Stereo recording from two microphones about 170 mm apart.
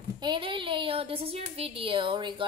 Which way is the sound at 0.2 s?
30° right (ahead or behind).